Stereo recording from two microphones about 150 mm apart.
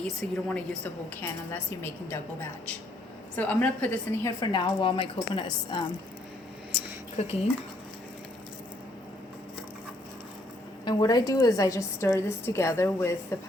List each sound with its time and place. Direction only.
0.2 s a woman's voice: 5° left (ahead or behind)
4.4 s a woman's voice: 35° left (ahead or behind)
7.2 s speech: 45° left (ahead or behind)
10.8 s a woman's voice: 25° left (ahead or behind)